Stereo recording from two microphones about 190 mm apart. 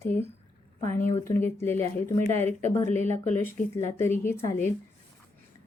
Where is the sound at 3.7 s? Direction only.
15° left (ahead or behind).